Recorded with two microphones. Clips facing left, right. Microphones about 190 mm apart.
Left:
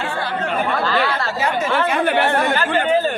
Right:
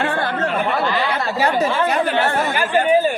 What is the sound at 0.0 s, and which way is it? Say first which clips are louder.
Chatter: right 3 dB; 55° right (ahead or behind).